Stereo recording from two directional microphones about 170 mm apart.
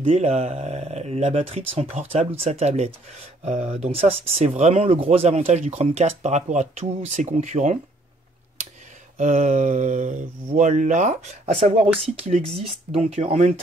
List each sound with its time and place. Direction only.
0.0 s speech: 40° right (ahead or behind)
9.2 s speech: 45° right (ahead or behind)